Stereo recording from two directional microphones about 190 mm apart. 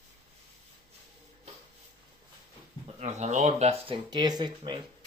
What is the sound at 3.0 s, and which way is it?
Speech, 35° right (ahead or behind).